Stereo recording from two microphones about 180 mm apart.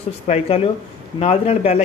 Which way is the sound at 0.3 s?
40° left (ahead or behind).